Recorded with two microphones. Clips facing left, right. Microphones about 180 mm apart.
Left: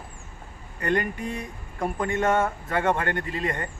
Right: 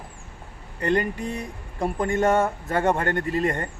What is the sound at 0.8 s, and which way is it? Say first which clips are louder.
Speech: right 2 dB; 30° right (ahead or behind).